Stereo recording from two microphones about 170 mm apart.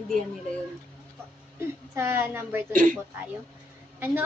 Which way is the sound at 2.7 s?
50° right (ahead or behind).